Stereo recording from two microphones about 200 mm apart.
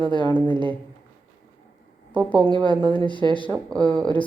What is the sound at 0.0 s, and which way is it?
Speech, 25° right (ahead or behind).